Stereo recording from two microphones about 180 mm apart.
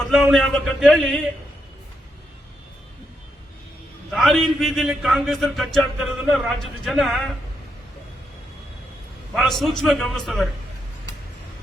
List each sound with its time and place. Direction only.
0.0 s speech: centre (ahead or behind)
4.1 s speech: centre (ahead or behind)
9.3 s speech: centre (ahead or behind)